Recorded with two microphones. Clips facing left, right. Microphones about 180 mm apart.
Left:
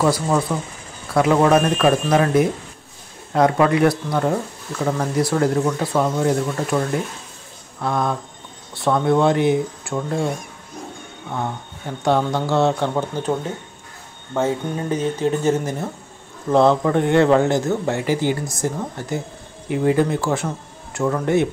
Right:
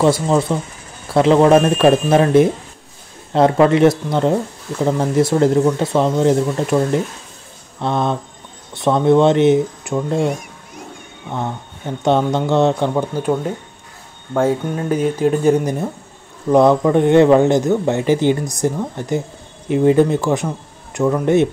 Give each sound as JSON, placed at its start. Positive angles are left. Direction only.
{"t": 0.0, "sound": "speech", "side_deg": -25}
{"t": 14.4, "sound": "speech", "side_deg": -10}